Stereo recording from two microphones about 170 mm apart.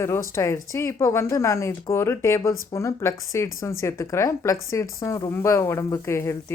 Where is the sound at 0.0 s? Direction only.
15° left (ahead or behind).